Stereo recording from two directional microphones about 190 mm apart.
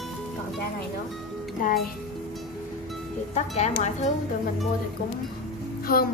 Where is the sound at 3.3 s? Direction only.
35° left (ahead or behind).